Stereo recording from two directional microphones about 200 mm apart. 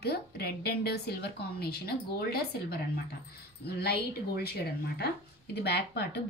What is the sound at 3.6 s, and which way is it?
Speech, 50° left (ahead or behind).